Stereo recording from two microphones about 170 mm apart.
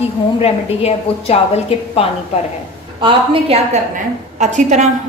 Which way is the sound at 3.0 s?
35° right (ahead or behind).